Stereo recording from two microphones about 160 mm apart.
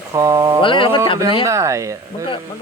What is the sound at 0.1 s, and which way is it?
Speech, 20° right (ahead or behind).